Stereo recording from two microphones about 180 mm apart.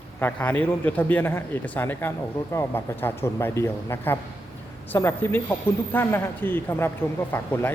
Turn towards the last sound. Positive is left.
turn(degrees=10)  # may be behind; listen again after turning